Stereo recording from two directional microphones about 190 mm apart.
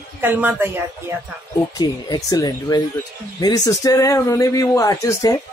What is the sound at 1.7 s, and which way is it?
Speech, 20° left (ahead or behind).